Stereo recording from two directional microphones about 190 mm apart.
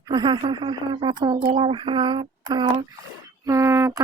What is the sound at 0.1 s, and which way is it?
Speech, 25° right (ahead or behind).